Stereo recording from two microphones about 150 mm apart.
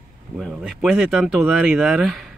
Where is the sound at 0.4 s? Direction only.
Centre (ahead or behind).